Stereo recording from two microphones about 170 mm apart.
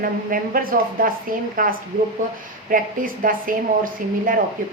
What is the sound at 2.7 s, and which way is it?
A woman's voice, 55° right (ahead or behind).